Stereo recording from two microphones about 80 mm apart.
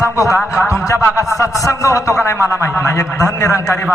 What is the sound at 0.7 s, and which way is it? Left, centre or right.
A man's voice, left.